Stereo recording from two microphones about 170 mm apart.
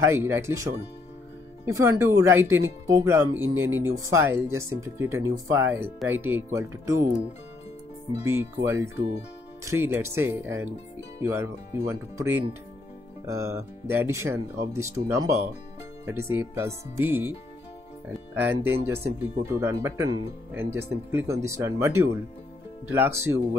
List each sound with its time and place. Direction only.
0.0 s speech: 15° right (ahead or behind)
1.7 s speech: 15° right (ahead or behind)
8.3 s speech: 15° right (ahead or behind)